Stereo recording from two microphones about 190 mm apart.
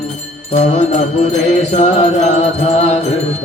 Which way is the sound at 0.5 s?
40° left (ahead or behind).